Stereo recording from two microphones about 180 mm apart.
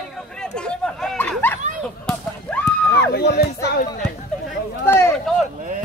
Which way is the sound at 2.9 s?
65° left (ahead or behind).